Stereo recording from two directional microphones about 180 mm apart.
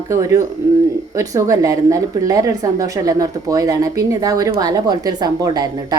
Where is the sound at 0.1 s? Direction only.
15° right (ahead or behind).